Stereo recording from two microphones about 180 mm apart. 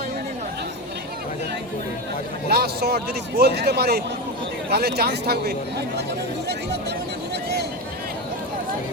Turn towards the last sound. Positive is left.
turn(degrees=-70)  # may be behind; listen again after turning